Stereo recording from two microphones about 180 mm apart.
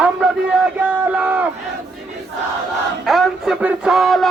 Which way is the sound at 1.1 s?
5° right (ahead or behind).